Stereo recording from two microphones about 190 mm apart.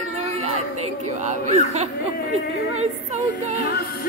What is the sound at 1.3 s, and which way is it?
Speech, 35° right (ahead or behind).